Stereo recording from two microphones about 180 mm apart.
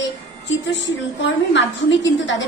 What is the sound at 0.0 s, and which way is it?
A woman's voice, 90° left.